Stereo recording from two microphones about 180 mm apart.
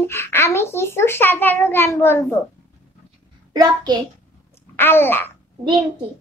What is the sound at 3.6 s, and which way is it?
Speech, 20° right (ahead or behind).